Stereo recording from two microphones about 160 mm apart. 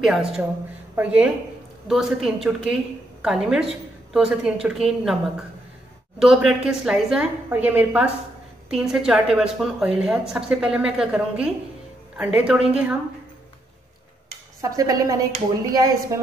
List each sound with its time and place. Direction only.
0.0 s a woman's voice: centre (ahead or behind)
6.1 s a woman's voice: 5° right (ahead or behind)
14.6 s dishes: 20° right (ahead or behind)